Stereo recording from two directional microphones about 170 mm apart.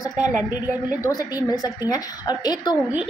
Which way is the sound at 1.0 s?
20° left (ahead or behind).